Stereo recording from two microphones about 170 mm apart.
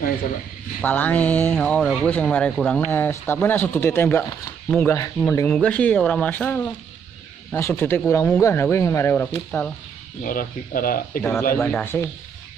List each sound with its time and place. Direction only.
0.7 s speech: 10° left (ahead or behind)
10.2 s speech: 55° left (ahead or behind)
11.5 s speech: 10° left (ahead or behind)